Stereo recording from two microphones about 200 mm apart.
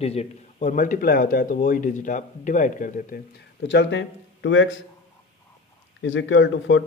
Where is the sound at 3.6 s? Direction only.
60° left (ahead or behind).